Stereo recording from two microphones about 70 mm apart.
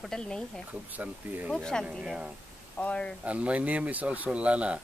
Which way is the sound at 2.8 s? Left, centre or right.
Centre.